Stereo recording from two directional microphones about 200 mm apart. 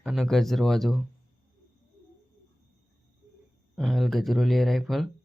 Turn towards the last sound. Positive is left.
turn(degrees=0)  # may be behind; listen again after turning